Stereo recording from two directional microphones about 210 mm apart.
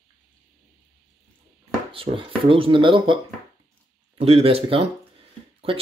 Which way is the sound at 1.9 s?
25° right (ahead or behind).